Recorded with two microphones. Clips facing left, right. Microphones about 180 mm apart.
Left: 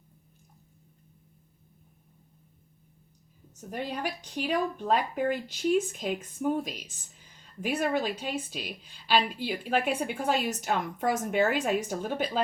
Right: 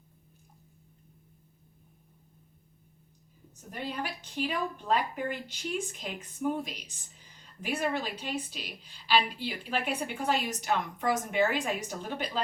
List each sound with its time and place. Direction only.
3.8 s a woman's voice: 40° left (ahead or behind)
7.6 s a woman's voice: 45° left (ahead or behind)